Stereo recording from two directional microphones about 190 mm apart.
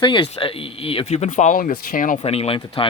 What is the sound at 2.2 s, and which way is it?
Speech, 30° left (ahead or behind).